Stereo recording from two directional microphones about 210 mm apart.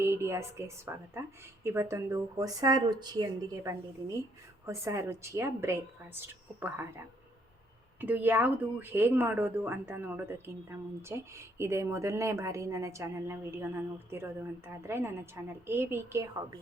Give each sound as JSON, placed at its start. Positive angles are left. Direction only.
{"t": 0.0, "sound": "a woman's voice", "side_deg": -15}
{"t": 8.0, "sound": "speech", "side_deg": -10}